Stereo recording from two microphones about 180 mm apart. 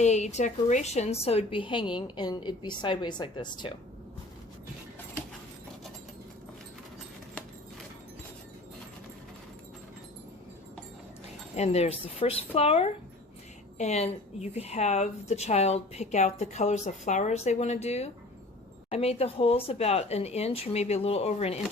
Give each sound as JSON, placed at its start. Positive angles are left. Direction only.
{"t": 0.0, "sound": "a woman's voice", "side_deg": 40}
{"t": 11.5, "sound": "a woman's voice", "side_deg": 35}